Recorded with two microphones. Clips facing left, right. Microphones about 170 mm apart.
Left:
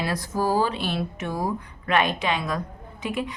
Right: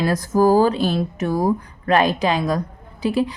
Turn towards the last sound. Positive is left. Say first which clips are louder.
# right 8 dB
turn(degrees=-35)  # may be behind; listen again after turning